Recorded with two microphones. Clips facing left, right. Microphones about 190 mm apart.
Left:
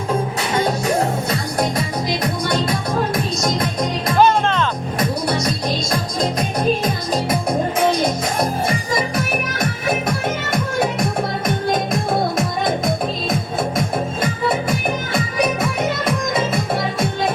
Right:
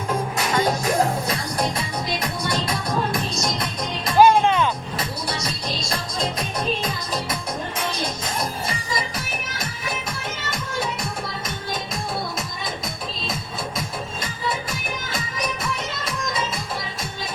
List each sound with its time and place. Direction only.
4.2 s music: 10° right (ahead or behind)
6.6 s music: 50° left (ahead or behind)